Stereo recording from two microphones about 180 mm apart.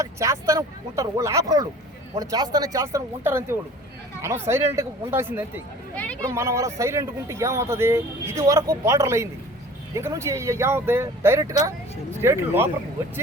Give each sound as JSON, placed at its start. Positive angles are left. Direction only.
{"t": 0.0, "sound": "speech", "side_deg": -15}